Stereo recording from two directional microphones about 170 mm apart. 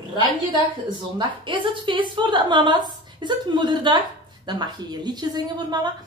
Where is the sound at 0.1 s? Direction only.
25° right (ahead or behind).